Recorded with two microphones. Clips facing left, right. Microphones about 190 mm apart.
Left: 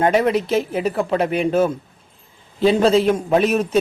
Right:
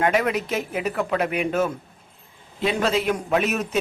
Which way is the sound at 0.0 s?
30° left (ahead or behind).